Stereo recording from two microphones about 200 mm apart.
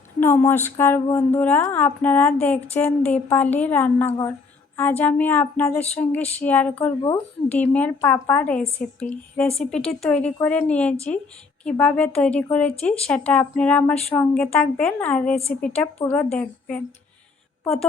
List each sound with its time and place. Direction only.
0.2 s speech: 10° left (ahead or behind)